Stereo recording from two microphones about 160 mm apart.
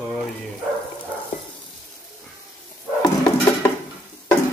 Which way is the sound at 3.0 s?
25° left (ahead or behind).